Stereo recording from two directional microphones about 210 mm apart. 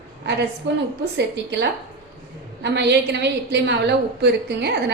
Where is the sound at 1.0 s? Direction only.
55° right (ahead or behind).